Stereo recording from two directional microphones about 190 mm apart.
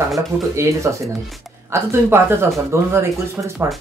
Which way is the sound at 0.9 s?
15° right (ahead or behind).